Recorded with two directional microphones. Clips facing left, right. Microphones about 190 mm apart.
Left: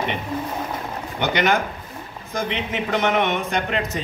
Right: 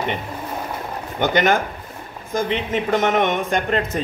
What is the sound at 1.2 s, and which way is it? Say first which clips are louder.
Speech: right 3 dB; 45° right (ahead or behind).